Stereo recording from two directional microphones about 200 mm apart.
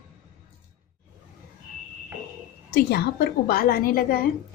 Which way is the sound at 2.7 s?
55° left (ahead or behind).